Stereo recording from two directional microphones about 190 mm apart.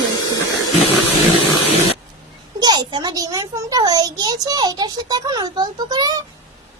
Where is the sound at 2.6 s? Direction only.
25° right (ahead or behind).